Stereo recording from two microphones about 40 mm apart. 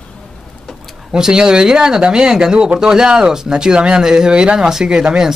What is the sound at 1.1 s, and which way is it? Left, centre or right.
Speech, centre.